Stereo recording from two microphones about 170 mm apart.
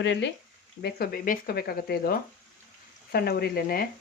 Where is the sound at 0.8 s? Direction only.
65° left (ahead or behind).